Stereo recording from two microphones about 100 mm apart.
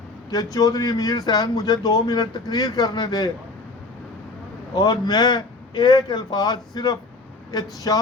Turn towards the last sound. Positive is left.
turn(degrees=40)  # may be behind; listen again after turning